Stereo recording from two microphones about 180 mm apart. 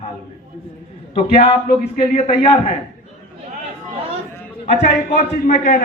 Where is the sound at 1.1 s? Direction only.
30° left (ahead or behind).